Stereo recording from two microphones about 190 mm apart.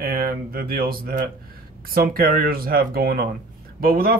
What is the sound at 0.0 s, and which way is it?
Speech, 50° right (ahead or behind).